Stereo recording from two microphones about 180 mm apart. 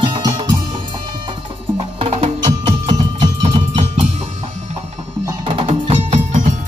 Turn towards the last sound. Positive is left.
turn(degrees=-45)  # may be behind; listen again after turning